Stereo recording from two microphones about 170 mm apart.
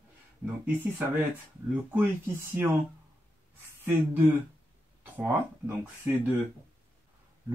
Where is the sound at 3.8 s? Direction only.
15° right (ahead or behind).